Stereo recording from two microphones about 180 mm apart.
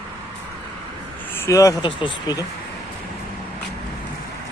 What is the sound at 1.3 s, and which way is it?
Speech, 15° left (ahead or behind).